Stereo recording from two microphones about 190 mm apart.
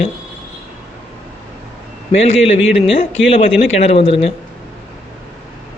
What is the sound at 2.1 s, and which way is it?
Speech, 30° left (ahead or behind).